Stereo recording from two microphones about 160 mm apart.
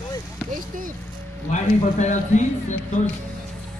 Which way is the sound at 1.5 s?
50° left (ahead or behind).